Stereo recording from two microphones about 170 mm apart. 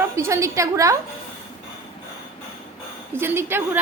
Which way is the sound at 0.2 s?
15° right (ahead or behind).